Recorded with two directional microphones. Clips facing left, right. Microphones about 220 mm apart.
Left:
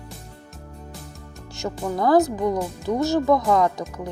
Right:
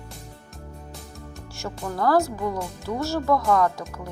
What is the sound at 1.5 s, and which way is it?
Speech, 15° left (ahead or behind).